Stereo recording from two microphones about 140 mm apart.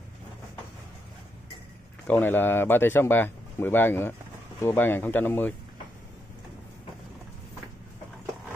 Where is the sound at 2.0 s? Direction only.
15° left (ahead or behind).